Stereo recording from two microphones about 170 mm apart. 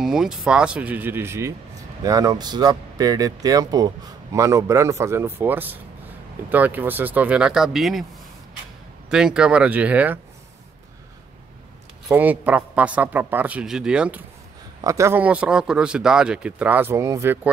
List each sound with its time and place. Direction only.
0.0 s speech: 5° right (ahead or behind)
9.1 s speech: 5° right (ahead or behind)
12.1 s speech: 10° right (ahead or behind)
14.8 s speech: 20° right (ahead or behind)